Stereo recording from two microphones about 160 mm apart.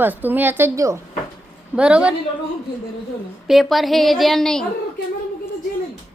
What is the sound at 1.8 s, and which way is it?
Speech, 5° right (ahead or behind).